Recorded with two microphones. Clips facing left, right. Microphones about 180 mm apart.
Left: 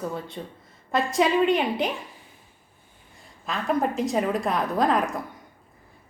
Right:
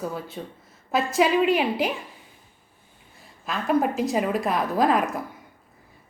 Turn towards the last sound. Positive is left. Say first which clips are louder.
# right 1 dB
turn(degrees=-5)  # may be behind; listen again after turning